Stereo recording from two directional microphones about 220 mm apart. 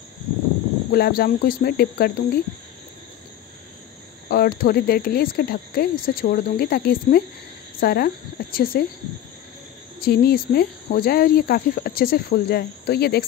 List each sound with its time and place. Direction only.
0.9 s speech: 45° left (ahead or behind)
4.3 s speech: 40° left (ahead or behind)
10.0 s speech: 45° left (ahead or behind)